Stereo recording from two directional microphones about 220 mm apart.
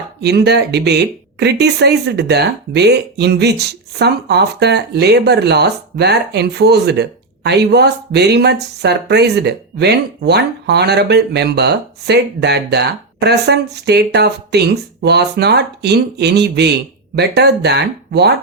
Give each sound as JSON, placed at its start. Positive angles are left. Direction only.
{"t": 0.2, "sound": "speech", "side_deg": -50}